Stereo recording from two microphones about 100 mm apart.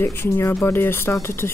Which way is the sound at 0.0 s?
25° left (ahead or behind).